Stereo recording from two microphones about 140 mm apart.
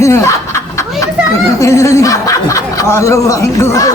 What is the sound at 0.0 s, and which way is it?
Snicker, 20° left (ahead or behind).